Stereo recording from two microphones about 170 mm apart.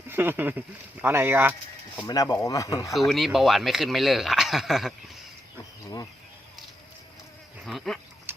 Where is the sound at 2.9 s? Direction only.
Centre (ahead or behind).